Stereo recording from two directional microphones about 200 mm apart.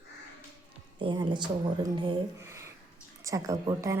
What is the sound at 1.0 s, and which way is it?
A woman's voice, 25° right (ahead or behind).